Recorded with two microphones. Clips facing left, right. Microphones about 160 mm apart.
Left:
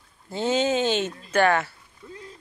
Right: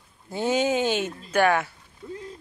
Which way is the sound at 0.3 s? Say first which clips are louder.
Even; 10° right (ahead or behind).